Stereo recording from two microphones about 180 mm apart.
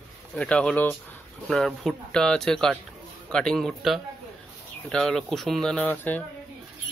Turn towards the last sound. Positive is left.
turn(degrees=10)  # may be behind; listen again after turning